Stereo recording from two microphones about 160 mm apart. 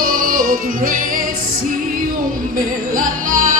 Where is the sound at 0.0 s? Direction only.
60° right (ahead or behind).